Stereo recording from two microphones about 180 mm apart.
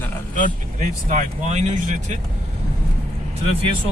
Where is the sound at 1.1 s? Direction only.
40° right (ahead or behind).